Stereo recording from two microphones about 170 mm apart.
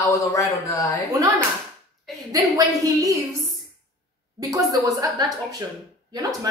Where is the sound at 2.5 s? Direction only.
20° right (ahead or behind).